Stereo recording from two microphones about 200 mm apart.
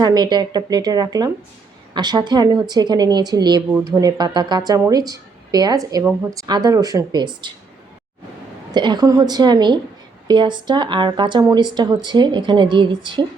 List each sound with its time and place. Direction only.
0.0 s speech: 20° right (ahead or behind)
8.7 s speech: 20° right (ahead or behind)